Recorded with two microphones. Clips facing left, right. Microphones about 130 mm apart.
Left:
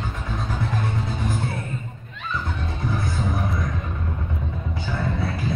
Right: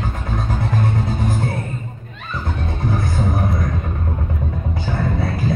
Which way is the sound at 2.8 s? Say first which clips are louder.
Right 5 dB; 40° right (ahead or behind).